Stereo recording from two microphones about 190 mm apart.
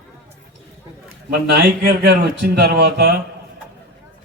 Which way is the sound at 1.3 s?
55° right (ahead or behind).